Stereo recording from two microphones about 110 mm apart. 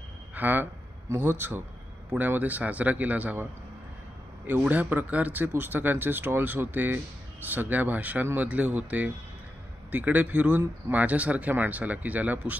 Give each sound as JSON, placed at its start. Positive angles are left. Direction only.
{"t": 0.3, "sound": "a man's voice", "side_deg": -15}
{"t": 4.5, "sound": "speech", "side_deg": -15}